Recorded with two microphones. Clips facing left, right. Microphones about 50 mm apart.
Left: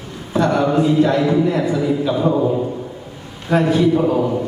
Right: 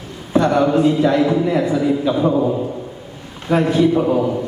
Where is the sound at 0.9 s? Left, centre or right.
Centre.